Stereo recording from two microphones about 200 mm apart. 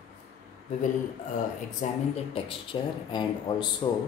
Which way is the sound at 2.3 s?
25° left (ahead or behind).